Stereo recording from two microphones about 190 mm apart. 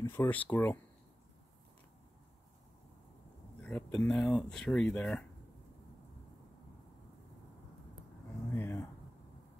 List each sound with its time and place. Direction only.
0.0 s speech: 10° left (ahead or behind)
3.6 s speech: 5° left (ahead or behind)
8.5 s speech: 15° left (ahead or behind)